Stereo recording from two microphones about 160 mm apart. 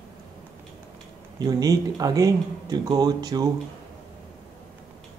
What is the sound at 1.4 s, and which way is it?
Speech, 25° right (ahead or behind).